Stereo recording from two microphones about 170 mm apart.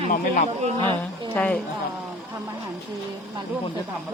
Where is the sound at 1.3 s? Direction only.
10° left (ahead or behind).